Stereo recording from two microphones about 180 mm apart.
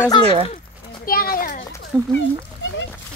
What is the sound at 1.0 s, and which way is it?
Speech, 55° left (ahead or behind).